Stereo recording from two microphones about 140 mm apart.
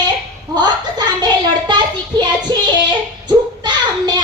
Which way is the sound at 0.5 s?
30° right (ahead or behind).